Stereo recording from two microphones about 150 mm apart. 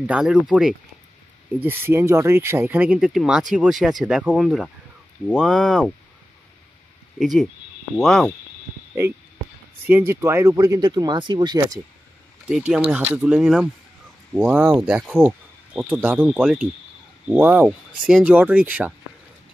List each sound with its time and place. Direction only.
0.0 s speech: 5° right (ahead or behind)
7.2 s speech: centre (ahead or behind)
9.8 s speech: 15° right (ahead or behind)
12.4 s speech: 5° right (ahead or behind)